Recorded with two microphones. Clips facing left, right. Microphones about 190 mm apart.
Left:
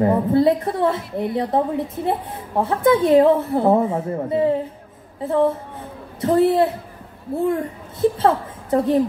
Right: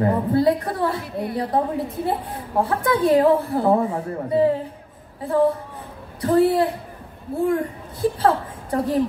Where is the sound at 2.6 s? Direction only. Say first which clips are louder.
Left 4 dB; 20° left (ahead or behind).